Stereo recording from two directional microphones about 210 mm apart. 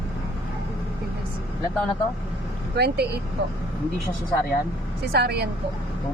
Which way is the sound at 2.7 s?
50° right (ahead or behind).